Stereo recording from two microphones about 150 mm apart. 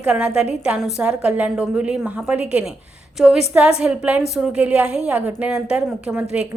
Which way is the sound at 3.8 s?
10° right (ahead or behind).